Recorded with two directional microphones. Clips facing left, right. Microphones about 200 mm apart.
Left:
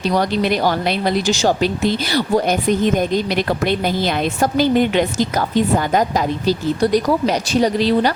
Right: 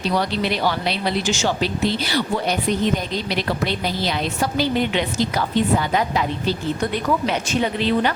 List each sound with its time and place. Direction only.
0.1 s speech: 45° left (ahead or behind)